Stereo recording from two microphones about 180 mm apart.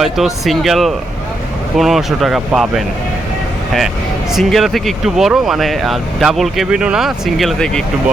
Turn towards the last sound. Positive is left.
turn(degrees=0)  # may be behind; listen again after turning